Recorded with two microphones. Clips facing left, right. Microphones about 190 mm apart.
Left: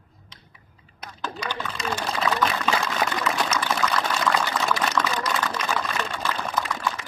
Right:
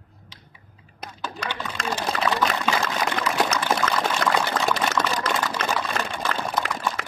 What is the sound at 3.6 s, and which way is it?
Water, 40° right (ahead or behind).